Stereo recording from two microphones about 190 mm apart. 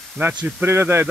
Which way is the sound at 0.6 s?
10° right (ahead or behind).